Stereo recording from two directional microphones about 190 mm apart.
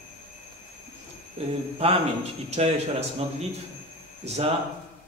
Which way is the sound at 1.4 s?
30° right (ahead or behind).